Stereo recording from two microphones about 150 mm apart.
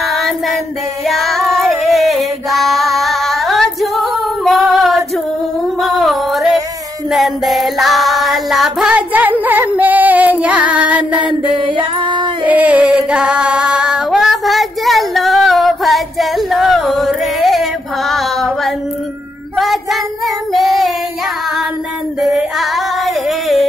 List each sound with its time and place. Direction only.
0.0 s child singing: centre (ahead or behind)
1.0 s female singing: centre (ahead or behind)
5.8 s music: centre (ahead or behind)
7.1 s child singing: centre (ahead or behind)
9.4 s female singing: 10° right (ahead or behind)
11.4 s female singing: 35° right (ahead or behind)
12.4 s singing: 10° right (ahead or behind)
19.5 s child singing: centre (ahead or behind)
22.2 s female singing: centre (ahead or behind)